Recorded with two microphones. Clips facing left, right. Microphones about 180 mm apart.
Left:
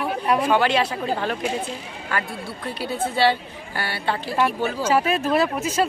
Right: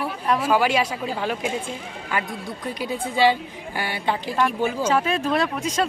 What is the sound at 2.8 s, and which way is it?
Speech, 15° right (ahead or behind).